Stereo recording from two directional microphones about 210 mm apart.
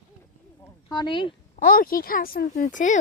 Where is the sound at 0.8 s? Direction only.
20° left (ahead or behind).